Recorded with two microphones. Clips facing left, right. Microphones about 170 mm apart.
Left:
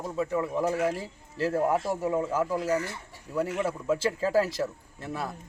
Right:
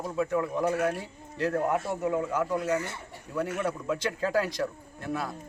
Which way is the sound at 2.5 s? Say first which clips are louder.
Even; 30° left (ahead or behind).